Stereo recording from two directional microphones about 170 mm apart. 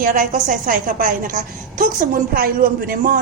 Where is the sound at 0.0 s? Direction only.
55° right (ahead or behind).